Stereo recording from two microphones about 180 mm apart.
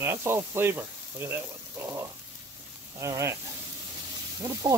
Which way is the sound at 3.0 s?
15° right (ahead or behind).